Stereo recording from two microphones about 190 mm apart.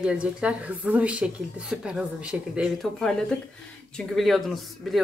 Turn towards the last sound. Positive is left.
turn(degrees=0)  # may be behind; listen again after turning